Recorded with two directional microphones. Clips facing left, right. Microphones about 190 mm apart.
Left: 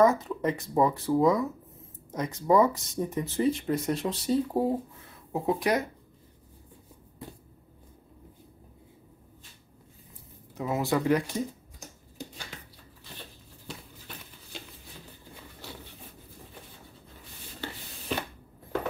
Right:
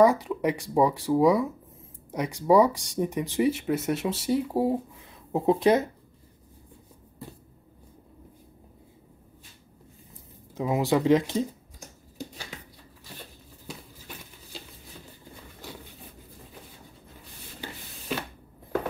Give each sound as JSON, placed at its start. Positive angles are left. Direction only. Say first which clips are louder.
{"t": 0.0, "sound": "speech", "louder": "right 2 dB", "side_deg": -10}
{"t": 5.3, "sound": "speech", "louder": "right 5 dB", "side_deg": -25}
{"t": 10.5, "sound": "speech", "louder": "right 3 dB", "side_deg": -15}
{"t": 13.7, "sound": "a sound", "louder": "right 1 dB", "side_deg": -5}